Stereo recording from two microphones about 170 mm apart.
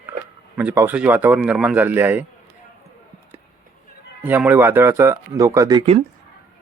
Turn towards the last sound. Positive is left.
turn(degrees=-15)  # may be behind; listen again after turning